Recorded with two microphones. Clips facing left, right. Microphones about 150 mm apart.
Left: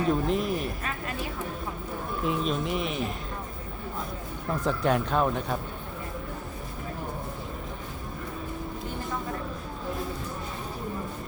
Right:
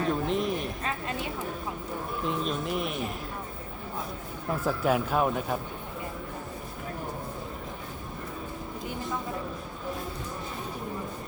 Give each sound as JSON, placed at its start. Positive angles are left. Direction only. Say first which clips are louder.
{"t": 0.1, "sound": "speech", "louder": "left 2 dB", "side_deg": 0}
{"t": 0.9, "sound": "a woman's voice", "louder": "right 1 dB", "side_deg": -25}
{"t": 2.2, "sound": "speech", "louder": "left 3 dB", "side_deg": 0}
{"t": 4.6, "sound": "speech", "louder": "left 1 dB", "side_deg": -5}